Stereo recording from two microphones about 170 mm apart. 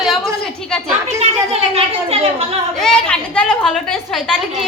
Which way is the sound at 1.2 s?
35° right (ahead or behind).